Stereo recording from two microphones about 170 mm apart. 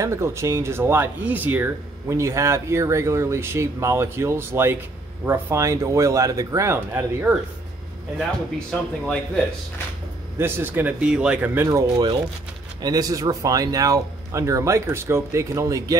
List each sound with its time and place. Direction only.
0.0 s speech: 15° right (ahead or behind)
8.2 s speech: centre (ahead or behind)
10.4 s speech: 10° right (ahead or behind)